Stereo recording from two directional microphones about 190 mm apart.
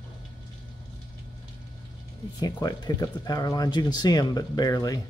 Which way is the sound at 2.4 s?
20° left (ahead or behind).